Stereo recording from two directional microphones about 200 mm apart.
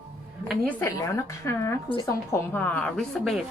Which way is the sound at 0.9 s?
15° left (ahead or behind).